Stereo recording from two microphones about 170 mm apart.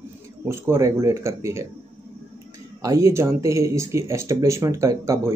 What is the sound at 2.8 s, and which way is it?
Speech, 20° right (ahead or behind).